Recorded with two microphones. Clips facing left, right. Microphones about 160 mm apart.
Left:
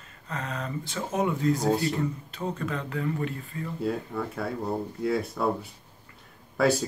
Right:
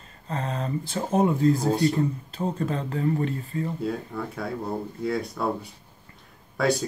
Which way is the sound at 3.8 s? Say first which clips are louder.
Even; centre (ahead or behind).